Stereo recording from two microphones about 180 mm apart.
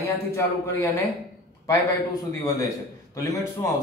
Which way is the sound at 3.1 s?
15° left (ahead or behind).